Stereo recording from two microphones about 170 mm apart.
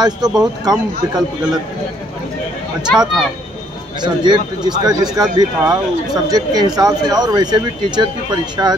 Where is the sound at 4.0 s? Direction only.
25° right (ahead or behind).